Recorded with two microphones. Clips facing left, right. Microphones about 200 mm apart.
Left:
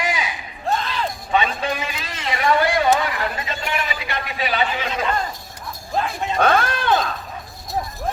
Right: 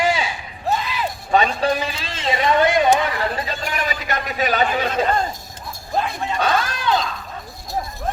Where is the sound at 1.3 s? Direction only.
40° right (ahead or behind); by 2.9 s 20° right (ahead or behind).